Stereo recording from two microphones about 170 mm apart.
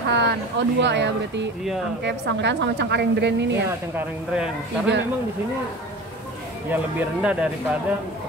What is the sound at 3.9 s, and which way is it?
Speech, 5° right (ahead or behind).